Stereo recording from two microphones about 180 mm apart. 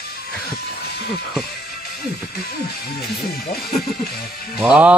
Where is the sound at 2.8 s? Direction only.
60° left (ahead or behind).